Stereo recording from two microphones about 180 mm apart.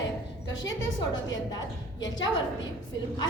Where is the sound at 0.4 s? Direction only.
20° left (ahead or behind).